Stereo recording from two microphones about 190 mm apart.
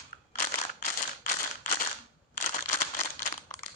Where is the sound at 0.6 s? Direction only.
40° left (ahead or behind).